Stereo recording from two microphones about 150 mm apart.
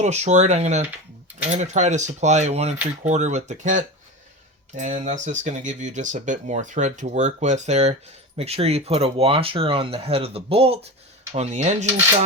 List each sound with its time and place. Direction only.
0.0 s speech: 50° right (ahead or behind)